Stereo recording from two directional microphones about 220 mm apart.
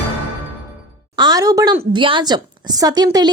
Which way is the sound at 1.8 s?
25° right (ahead or behind).